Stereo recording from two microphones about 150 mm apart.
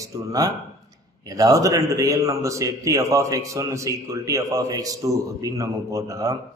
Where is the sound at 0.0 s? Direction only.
20° right (ahead or behind).